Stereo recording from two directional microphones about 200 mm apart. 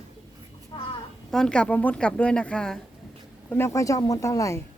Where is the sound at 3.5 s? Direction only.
15° left (ahead or behind).